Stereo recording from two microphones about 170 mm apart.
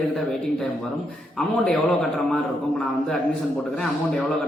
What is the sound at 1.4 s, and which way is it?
A man's voice, 5° left (ahead or behind).